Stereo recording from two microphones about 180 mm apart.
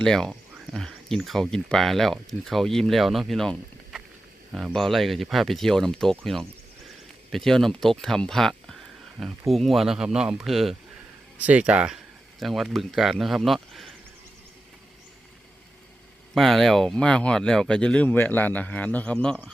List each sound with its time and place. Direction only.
0.0 s speech: 5° left (ahead or behind)
16.3 s speech: centre (ahead or behind)